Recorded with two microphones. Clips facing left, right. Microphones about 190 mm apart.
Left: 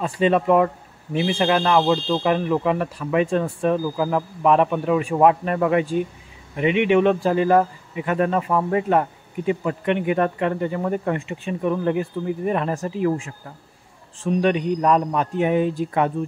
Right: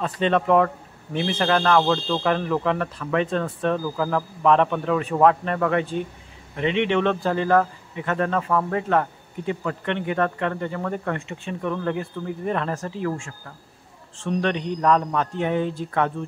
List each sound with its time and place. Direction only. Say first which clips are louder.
0.0 s speech: left 3 dB; 10° left (ahead or behind)